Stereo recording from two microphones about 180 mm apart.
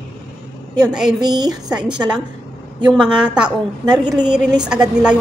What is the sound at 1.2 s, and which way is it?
Speech, 20° right (ahead or behind).